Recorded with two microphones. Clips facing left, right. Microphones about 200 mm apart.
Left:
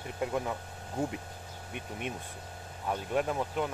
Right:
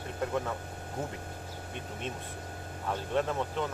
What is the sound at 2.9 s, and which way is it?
Speech, 10° left (ahead or behind).